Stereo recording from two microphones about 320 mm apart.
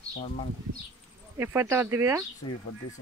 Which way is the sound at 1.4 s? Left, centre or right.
Centre.